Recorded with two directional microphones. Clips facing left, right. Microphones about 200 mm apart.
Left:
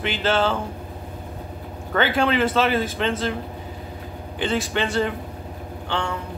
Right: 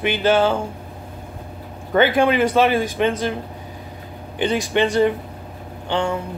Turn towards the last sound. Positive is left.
turn(degrees=-15)  # may be behind; listen again after turning